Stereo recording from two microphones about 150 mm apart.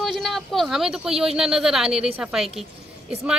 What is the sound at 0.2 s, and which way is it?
Speech, centre (ahead or behind).